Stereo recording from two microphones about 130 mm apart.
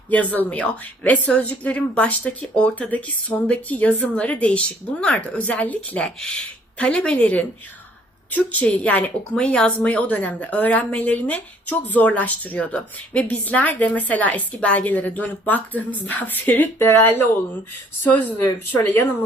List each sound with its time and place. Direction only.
0.1 s a woman's voice: 10° left (ahead or behind)